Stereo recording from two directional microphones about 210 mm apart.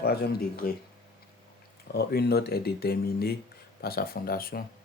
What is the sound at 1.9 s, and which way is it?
Speech, 50° left (ahead or behind).